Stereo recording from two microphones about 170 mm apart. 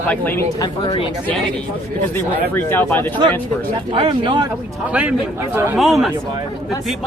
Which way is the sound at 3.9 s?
30° right (ahead or behind).